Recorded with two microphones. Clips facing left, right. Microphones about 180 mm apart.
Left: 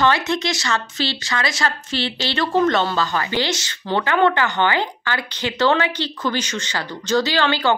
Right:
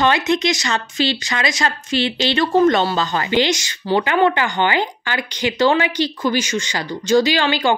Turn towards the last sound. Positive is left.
turn(degrees=-15)  # may be behind; listen again after turning